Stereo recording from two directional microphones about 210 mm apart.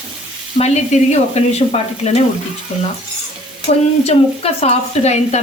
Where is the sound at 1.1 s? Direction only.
30° left (ahead or behind).